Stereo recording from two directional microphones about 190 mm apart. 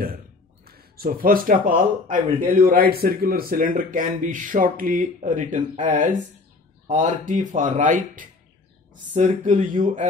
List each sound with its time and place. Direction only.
0.7 s speech: 55° right (ahead or behind)